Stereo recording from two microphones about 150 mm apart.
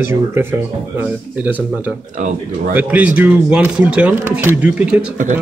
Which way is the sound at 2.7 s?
10° right (ahead or behind).